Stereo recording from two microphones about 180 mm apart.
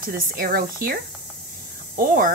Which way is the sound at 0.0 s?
55° right (ahead or behind).